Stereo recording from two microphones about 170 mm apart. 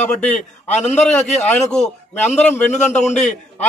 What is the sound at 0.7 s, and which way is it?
Speech, 40° left (ahead or behind).